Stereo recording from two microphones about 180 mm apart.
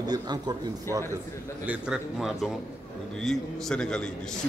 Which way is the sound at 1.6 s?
5° right (ahead or behind).